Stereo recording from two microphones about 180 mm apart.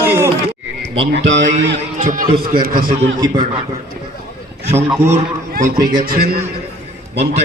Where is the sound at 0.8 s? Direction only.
80° right.